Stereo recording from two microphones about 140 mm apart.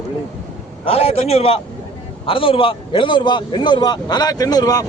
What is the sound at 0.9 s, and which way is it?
A man's voice, 45° left (ahead or behind).